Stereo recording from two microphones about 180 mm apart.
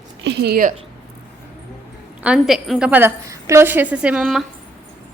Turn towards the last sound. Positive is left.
turn(degrees=0)  # may be behind; listen again after turning